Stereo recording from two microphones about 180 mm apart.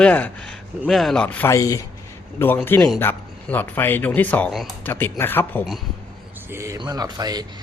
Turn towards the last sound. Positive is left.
turn(degrees=-20)  # may be behind; listen again after turning